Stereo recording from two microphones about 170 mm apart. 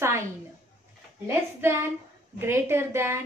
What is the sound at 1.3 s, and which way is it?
Speech, 15° right (ahead or behind).